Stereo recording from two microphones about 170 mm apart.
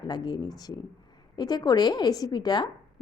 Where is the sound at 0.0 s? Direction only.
25° left (ahead or behind).